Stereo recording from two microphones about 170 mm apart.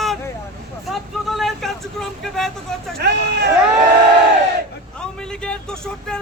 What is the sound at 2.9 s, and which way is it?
Speech, 75° right (ahead or behind).